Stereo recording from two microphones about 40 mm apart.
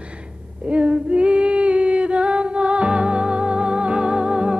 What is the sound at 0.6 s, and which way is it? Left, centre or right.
Female singing, right.